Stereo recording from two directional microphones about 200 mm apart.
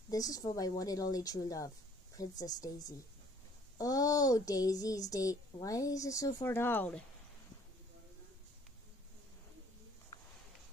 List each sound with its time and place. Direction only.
0.1 s speech: 20° left (ahead or behind)